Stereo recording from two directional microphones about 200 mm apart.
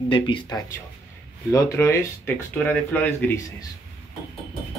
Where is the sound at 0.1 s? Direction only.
20° left (ahead or behind).